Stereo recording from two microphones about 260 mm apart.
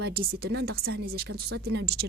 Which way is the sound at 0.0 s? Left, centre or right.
Right.